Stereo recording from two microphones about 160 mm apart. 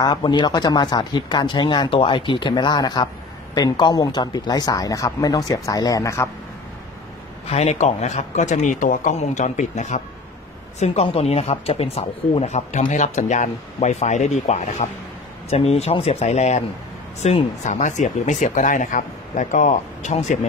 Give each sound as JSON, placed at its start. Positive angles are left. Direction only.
{"t": 0.0, "sound": "speech", "side_deg": 25}
{"t": 7.4, "sound": "speech", "side_deg": 40}